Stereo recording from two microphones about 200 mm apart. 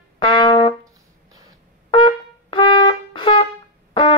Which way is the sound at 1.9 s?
25° left (ahead or behind).